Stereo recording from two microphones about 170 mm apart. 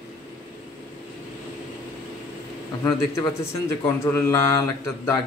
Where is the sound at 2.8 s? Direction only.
15° left (ahead or behind).